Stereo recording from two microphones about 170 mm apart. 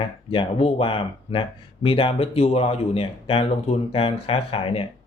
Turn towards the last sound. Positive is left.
turn(degrees=35)  # may be behind; listen again after turning